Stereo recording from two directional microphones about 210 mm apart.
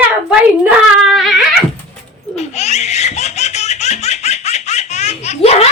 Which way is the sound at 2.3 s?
30° left (ahead or behind).